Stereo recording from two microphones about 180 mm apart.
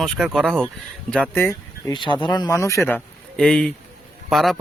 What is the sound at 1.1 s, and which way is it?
Speech, 10° left (ahead or behind).